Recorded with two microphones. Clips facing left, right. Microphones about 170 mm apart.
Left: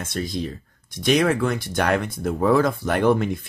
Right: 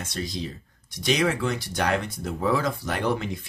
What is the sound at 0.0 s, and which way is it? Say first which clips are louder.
Speech: left 5 dB; 55° left (ahead or behind).